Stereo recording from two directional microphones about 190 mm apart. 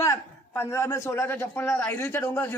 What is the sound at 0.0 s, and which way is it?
A man's voice, 15° left (ahead or behind).